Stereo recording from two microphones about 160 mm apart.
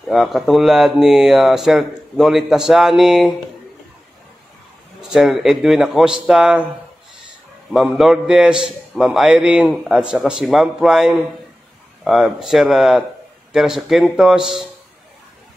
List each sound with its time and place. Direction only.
0.1 s a man's voice: centre (ahead or behind)
5.1 s a man's voice: centre (ahead or behind)
7.7 s a man's voice: 5° right (ahead or behind)